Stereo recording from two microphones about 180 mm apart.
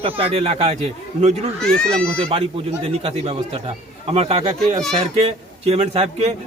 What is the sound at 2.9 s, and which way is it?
A man's voice, 35° right (ahead or behind).